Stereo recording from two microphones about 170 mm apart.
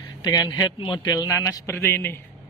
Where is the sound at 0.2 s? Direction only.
25° left (ahead or behind).